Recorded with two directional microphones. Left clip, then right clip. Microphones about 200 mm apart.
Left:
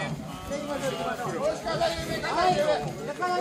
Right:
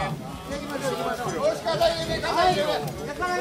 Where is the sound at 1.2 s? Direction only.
40° right (ahead or behind).